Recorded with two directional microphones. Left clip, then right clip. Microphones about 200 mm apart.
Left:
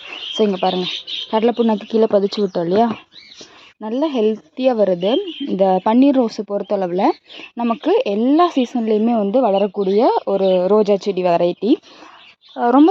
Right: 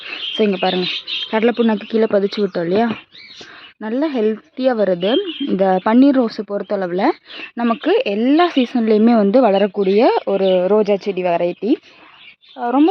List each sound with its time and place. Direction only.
0.3 s speech: centre (ahead or behind)
9.0 s a woman's voice: 10° right (ahead or behind)
10.6 s speech: 10° left (ahead or behind)
12.5 s speech: 25° left (ahead or behind)